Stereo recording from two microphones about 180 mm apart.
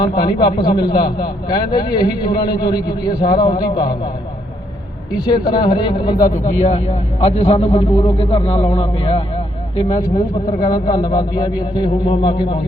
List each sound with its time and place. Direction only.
0.0 s a man's voice: 25° left (ahead or behind)
5.5 s a man's voice: 25° left (ahead or behind)
6.3 s a man's voice: 40° left (ahead or behind)
10.7 s a man's voice: 20° left (ahead or behind)